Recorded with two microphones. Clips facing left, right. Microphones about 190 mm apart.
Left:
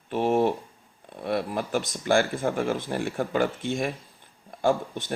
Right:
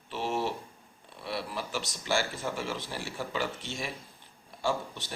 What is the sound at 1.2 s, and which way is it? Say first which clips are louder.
Speech: left 8 dB; 50° left (ahead or behind).